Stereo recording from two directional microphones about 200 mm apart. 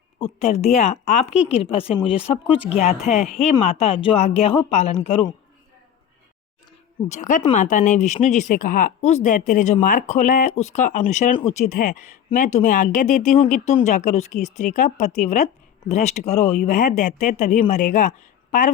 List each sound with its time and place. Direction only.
0.2 s speech: 35° left (ahead or behind)
7.1 s speech: 40° left (ahead or behind)